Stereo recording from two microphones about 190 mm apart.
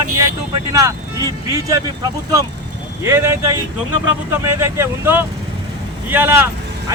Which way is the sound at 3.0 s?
15° right (ahead or behind).